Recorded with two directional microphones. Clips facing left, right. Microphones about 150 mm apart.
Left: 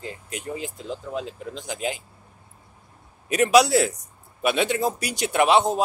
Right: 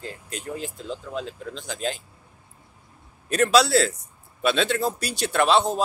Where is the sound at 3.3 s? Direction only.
15° left (ahead or behind).